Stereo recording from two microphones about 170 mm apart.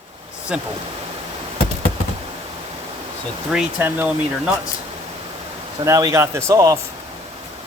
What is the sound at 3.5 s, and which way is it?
Speech, 10° right (ahead or behind).